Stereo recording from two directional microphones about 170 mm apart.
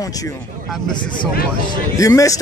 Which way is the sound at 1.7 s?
20° left (ahead or behind).